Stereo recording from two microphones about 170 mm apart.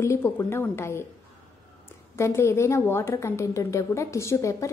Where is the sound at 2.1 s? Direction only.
15° left (ahead or behind).